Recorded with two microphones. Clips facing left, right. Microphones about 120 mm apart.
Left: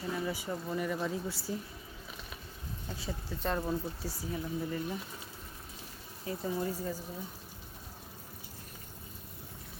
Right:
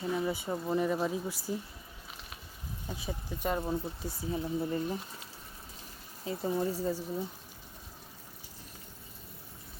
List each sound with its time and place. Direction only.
0.0 s speech: 20° right (ahead or behind)
2.9 s speech: 15° right (ahead or behind)
4.2 s speech: 25° right (ahead or behind)
6.2 s speech: 25° right (ahead or behind)